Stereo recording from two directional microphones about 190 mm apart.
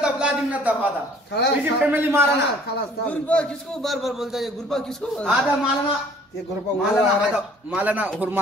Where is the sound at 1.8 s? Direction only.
10° right (ahead or behind).